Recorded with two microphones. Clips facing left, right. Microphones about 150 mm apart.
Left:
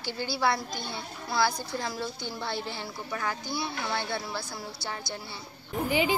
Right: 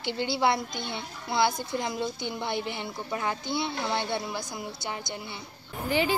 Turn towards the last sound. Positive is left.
turn(degrees=15)  # may be behind; listen again after turning